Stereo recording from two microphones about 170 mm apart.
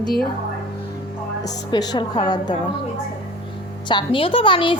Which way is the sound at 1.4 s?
20° left (ahead or behind).